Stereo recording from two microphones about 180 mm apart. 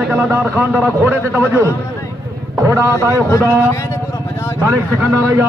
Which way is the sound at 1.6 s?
15° left (ahead or behind).